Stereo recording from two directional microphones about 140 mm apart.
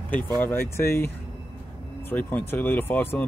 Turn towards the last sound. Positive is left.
turn(degrees=15)  # may be behind; listen again after turning